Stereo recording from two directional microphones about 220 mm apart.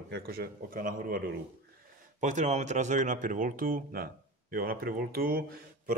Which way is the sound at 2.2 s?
35° right (ahead or behind).